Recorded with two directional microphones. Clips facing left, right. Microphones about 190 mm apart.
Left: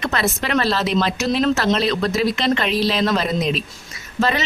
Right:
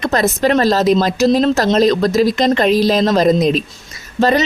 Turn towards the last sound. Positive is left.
turn(degrees=-40)  # may be behind; listen again after turning